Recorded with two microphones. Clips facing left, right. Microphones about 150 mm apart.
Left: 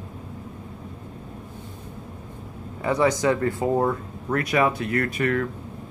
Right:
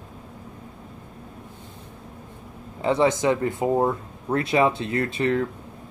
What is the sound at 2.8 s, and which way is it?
Speech, 25° right (ahead or behind).